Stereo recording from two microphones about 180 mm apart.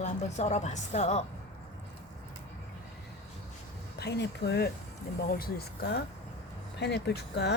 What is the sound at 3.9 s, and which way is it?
Speech, 70° left (ahead or behind).